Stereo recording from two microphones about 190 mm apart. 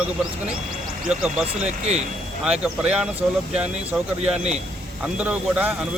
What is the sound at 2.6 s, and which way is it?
Speech, 5° right (ahead or behind).